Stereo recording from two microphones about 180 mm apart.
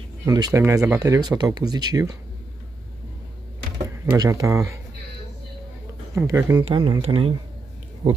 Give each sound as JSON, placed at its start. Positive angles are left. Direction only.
{"t": 0.3, "sound": "speech", "side_deg": -20}
{"t": 4.0, "sound": "speech", "side_deg": -15}
{"t": 6.1, "sound": "speech", "side_deg": -15}
{"t": 6.6, "sound": "speech", "side_deg": -25}